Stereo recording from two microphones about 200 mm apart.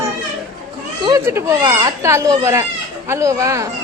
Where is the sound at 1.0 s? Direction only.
20° right (ahead or behind).